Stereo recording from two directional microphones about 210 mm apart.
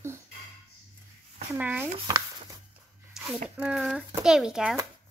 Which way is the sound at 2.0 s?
20° right (ahead or behind).